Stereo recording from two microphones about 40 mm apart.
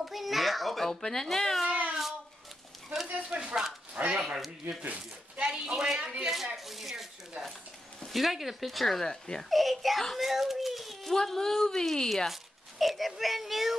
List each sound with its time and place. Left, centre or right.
0.0 s a child's voice: centre
1.7 s a sound: right
3.1 s speech: right
3.9 s speech: right
5.5 s a woman's voice: centre
6.2 s speech: centre
8.1 s speech: centre
9.5 s a child's voice: centre
11.1 s a woman's voice: centre
12.3 s speech: centre